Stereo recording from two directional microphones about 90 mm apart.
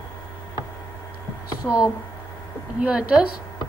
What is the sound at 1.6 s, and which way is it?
Speech, 20° left (ahead or behind).